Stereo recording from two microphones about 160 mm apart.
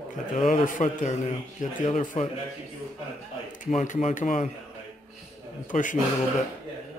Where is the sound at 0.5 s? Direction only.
55° left (ahead or behind).